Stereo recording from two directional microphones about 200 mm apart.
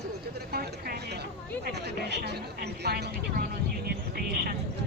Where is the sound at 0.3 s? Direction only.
50° right (ahead or behind).